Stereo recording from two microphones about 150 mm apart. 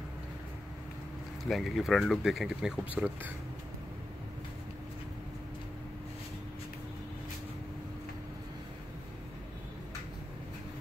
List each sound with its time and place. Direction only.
1.4 s speech: centre (ahead or behind)